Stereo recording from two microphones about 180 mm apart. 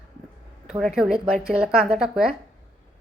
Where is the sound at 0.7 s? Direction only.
5° right (ahead or behind).